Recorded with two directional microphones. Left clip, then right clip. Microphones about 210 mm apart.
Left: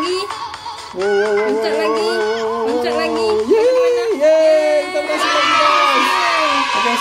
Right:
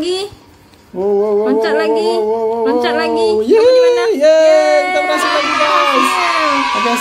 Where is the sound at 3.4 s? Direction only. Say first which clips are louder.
Right 5 dB; 5° right (ahead or behind).